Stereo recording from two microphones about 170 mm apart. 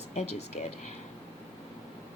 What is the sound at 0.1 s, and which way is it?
Speech, 40° left (ahead or behind).